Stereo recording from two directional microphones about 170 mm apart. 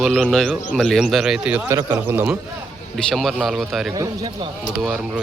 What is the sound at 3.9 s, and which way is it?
Speech, 25° right (ahead or behind).